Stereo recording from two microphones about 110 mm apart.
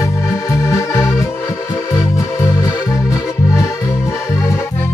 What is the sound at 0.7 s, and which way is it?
Music, 25° left (ahead or behind).